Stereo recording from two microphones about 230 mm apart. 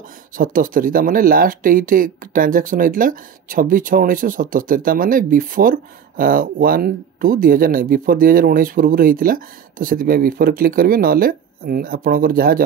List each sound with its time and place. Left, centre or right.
0.4 s speech: right